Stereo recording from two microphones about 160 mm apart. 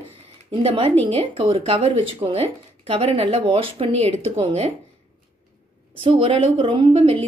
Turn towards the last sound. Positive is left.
turn(degrees=-35)  # may be behind; listen again after turning